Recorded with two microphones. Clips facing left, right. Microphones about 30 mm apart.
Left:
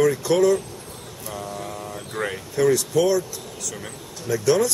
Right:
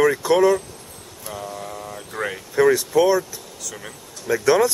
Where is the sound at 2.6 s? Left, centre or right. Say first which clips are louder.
Right 3 dB; right.